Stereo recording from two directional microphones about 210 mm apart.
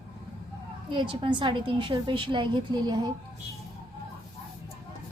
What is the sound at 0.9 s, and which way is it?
A woman's voice, 25° right (ahead or behind).